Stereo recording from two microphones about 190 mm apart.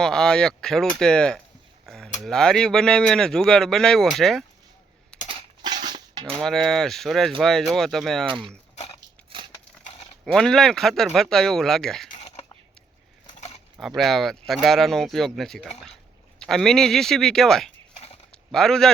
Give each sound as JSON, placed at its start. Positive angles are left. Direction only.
{"t": 0.0, "sound": "speech", "side_deg": 5}
{"t": 5.1, "sound": "coin", "side_deg": 5}
{"t": 5.6, "sound": "dishes", "side_deg": -20}
{"t": 6.4, "sound": "speech", "side_deg": 0}
{"t": 10.3, "sound": "speech", "side_deg": 0}
{"t": 13.2, "sound": "a sound", "side_deg": 30}
{"t": 13.7, "sound": "speech", "side_deg": 0}
{"t": 18.3, "sound": "a sound", "side_deg": 5}